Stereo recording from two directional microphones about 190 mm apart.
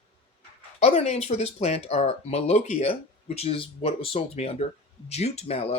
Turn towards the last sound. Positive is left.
turn(degrees=30)  # may be behind; listen again after turning